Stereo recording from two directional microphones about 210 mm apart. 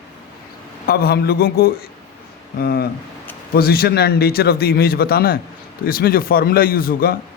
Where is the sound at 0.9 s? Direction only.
50° left (ahead or behind).